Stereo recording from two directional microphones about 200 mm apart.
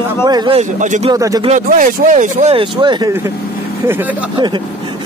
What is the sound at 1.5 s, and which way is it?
Speech, 40° right (ahead or behind).